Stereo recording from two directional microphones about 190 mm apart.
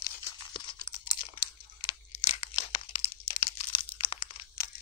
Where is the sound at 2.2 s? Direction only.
30° left (ahead or behind).